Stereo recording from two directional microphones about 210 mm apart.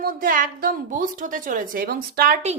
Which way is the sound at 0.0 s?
40° right (ahead or behind).